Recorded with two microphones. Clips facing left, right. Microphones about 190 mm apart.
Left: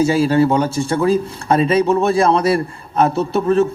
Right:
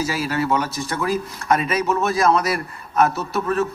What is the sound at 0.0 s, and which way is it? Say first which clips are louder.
Speech: left 9 dB; 30° left (ahead or behind).